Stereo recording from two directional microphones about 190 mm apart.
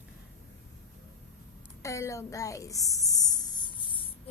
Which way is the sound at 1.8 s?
15° left (ahead or behind).